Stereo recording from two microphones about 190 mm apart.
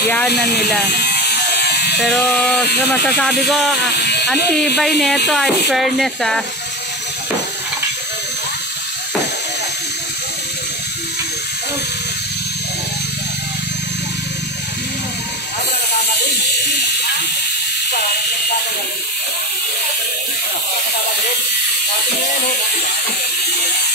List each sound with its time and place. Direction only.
0.3 s electric shaver: 60° left (ahead or behind)
2.0 s speech: centre (ahead or behind)
3.9 s a sound: 60° left (ahead or behind)
4.7 s speech: centre (ahead or behind)